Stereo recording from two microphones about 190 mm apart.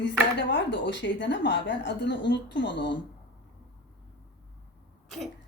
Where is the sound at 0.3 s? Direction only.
70° left (ahead or behind).